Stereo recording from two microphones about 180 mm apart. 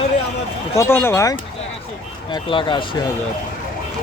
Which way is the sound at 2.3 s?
25° left (ahead or behind).